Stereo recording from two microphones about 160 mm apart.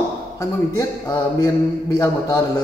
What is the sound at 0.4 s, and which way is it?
A man's voice, 20° left (ahead or behind).